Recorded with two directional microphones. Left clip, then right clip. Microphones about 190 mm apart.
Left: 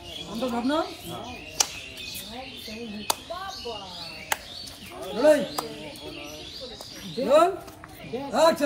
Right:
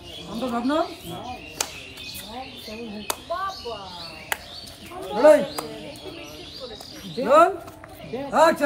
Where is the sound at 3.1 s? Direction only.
20° left (ahead or behind).